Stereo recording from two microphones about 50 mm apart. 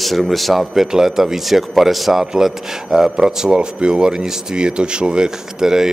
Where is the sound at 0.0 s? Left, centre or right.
Centre.